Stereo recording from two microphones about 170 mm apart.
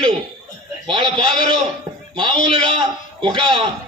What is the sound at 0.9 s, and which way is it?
A man's voice, 30° right (ahead or behind).